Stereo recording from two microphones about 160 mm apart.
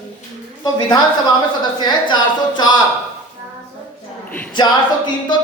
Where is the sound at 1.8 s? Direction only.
30° left (ahead or behind).